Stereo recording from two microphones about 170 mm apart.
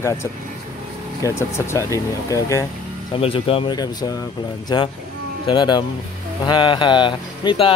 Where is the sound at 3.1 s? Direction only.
35° left (ahead or behind).